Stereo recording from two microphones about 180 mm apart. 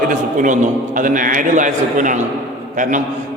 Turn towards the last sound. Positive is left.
turn(degrees=-45)  # may be behind; listen again after turning